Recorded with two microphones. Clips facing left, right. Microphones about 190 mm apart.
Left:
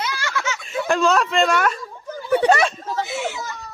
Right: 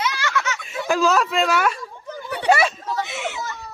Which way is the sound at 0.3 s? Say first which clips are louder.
Right 1 dB; 25° left (ahead or behind).